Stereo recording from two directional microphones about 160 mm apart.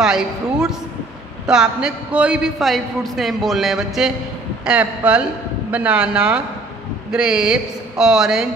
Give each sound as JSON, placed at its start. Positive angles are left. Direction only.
{"t": 0.0, "sound": "a man's voice", "side_deg": -5}